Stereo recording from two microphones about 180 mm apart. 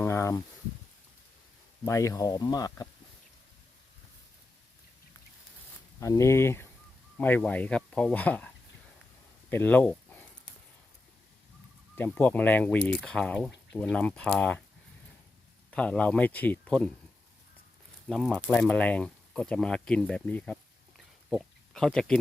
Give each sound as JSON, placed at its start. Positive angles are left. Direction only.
{"t": 0.0, "sound": "a sound", "side_deg": 15}
{"t": 1.8, "sound": "speech", "side_deg": 15}
{"t": 6.0, "sound": "speech", "side_deg": 15}
{"t": 9.5, "sound": "a sound", "side_deg": 10}
{"t": 11.9, "sound": "speech", "side_deg": 10}
{"t": 15.7, "sound": "speech", "side_deg": 5}
{"t": 18.1, "sound": "speech", "side_deg": 5}